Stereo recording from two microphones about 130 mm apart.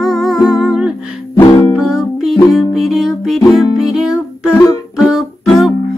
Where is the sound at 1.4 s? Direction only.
35° left (ahead or behind).